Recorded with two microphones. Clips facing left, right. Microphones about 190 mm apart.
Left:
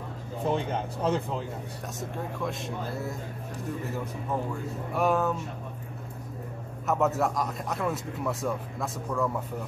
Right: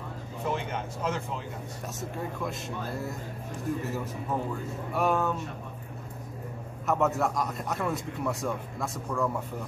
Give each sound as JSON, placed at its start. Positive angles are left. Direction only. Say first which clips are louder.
{"t": 0.5, "sound": "speech", "louder": "left 4 dB", "side_deg": 30}
{"t": 2.0, "sound": "a man's voice", "louder": "left 1 dB", "side_deg": 0}
{"t": 4.9, "sound": "a man's voice", "louder": "left 1 dB", "side_deg": 0}
{"t": 6.9, "sound": "a man's voice", "louder": "left 1 dB", "side_deg": 0}